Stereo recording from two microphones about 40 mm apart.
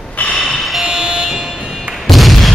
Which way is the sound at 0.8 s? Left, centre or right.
Right.